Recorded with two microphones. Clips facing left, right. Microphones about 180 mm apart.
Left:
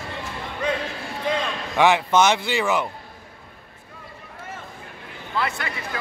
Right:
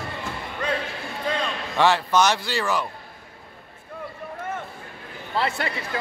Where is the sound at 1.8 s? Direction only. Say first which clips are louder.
Left 2 dB; 15° left (ahead or behind).